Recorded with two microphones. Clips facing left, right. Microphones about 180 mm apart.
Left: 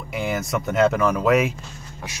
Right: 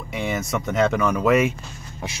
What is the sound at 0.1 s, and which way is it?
Speech, centre (ahead or behind).